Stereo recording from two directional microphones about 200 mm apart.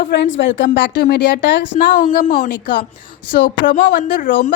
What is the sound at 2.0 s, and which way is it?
Speech, 40° left (ahead or behind).